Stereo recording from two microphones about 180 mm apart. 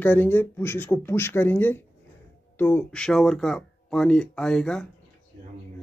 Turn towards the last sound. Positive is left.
turn(degrees=5)  # may be behind; listen again after turning